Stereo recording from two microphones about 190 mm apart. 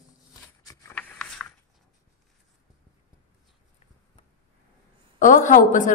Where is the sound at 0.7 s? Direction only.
15° left (ahead or behind).